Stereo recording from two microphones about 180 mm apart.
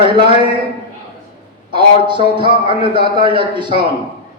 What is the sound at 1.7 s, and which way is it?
A man's voice, 25° right (ahead or behind).